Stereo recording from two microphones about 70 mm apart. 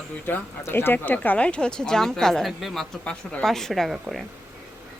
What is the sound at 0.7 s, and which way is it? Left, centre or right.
A woman's voice, left.